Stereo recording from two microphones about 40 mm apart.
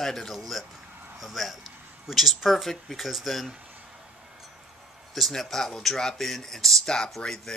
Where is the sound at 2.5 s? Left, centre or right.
Centre.